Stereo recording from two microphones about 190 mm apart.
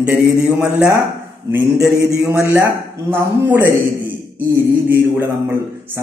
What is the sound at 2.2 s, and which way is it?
Speech, 15° right (ahead or behind).